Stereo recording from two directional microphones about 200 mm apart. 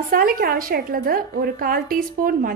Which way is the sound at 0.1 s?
45° right (ahead or behind).